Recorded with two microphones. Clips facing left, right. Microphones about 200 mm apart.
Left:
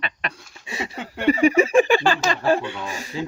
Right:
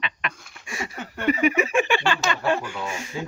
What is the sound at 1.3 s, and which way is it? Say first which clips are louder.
Speech: left 5 dB; 30° left (ahead or behind).